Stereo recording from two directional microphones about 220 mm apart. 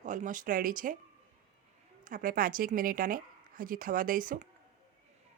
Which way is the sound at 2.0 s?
40° right (ahead or behind).